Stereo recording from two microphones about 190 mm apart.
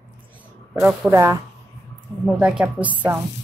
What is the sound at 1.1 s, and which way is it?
Speech, 15° right (ahead or behind).